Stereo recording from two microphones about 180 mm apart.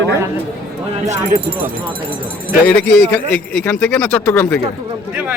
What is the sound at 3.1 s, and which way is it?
Speech, 10° left (ahead or behind).